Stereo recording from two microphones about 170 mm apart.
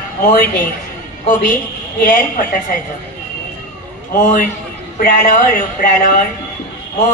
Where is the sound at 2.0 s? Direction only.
55° left (ahead or behind).